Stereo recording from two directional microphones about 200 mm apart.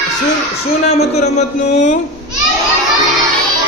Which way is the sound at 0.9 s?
30° left (ahead or behind).